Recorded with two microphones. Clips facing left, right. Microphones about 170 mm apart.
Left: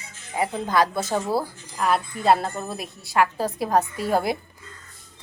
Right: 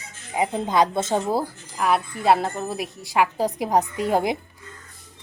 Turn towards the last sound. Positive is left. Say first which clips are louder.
# right 1 dB
turn(degrees=-20)  # may be behind; listen again after turning